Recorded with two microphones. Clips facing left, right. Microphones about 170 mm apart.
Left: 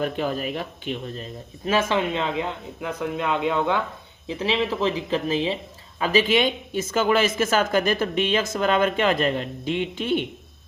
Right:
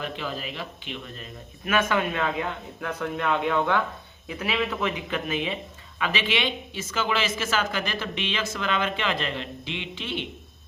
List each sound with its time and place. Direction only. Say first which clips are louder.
0.0 s speech: left 7 dB; 45° left (ahead or behind)